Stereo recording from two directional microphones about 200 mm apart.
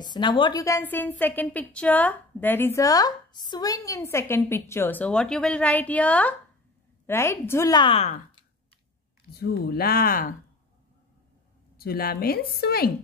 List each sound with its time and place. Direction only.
0.0 s a woman's voice: 20° left (ahead or behind)
9.3 s speech: 50° left (ahead or behind)
11.8 s speech: 50° left (ahead or behind)